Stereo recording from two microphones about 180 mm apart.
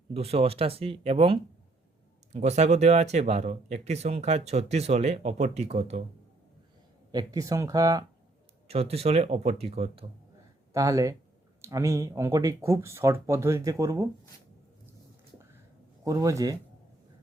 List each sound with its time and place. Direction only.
0.1 s speech: 35° right (ahead or behind)
7.1 s speech: 20° right (ahead or behind)
8.6 s speech: 35° right (ahead or behind)
10.7 s speech: 15° right (ahead or behind)
16.0 s speech: 15° right (ahead or behind)